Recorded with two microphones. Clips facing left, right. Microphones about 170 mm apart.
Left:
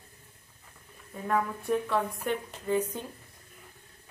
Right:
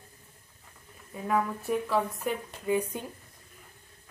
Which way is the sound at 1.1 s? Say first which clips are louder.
Right 1 dB; 5° right (ahead or behind).